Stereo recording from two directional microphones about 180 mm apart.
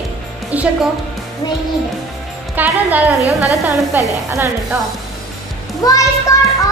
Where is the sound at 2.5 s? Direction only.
10° right (ahead or behind).